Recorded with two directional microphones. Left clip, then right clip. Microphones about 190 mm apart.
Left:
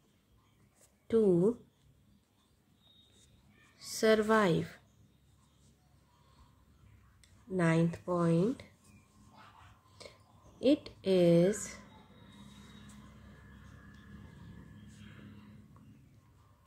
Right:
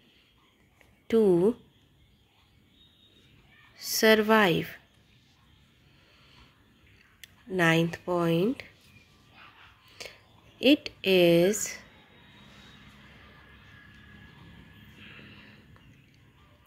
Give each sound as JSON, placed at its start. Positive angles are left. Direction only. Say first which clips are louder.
{"t": 1.0, "sound": "a woman's voice", "louder": "right 5 dB", "side_deg": -15}
{"t": 3.7, "sound": "speech", "louder": "right 6 dB", "side_deg": -15}
{"t": 7.2, "sound": "speech", "louder": "right 7 dB", "side_deg": -15}
{"t": 10.0, "sound": "a sound", "louder": "right 9 dB", "side_deg": -15}
{"t": 10.6, "sound": "a woman's voice", "louder": "right 6 dB", "side_deg": -15}